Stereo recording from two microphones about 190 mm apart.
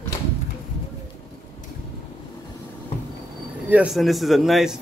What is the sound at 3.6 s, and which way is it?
Speech, 5° right (ahead or behind).